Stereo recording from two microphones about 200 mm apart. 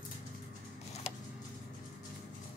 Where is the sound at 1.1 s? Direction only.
35° left (ahead or behind).